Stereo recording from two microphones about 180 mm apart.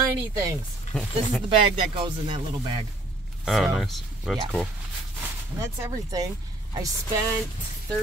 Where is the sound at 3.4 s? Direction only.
Centre (ahead or behind).